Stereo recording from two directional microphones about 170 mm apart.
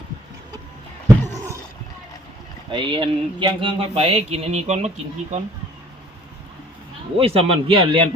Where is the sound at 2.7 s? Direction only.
30° right (ahead or behind).